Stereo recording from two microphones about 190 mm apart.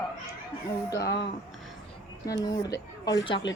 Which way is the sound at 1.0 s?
65° left (ahead or behind).